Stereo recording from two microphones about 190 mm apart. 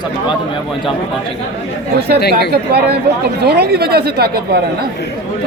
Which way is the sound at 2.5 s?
60° right (ahead or behind).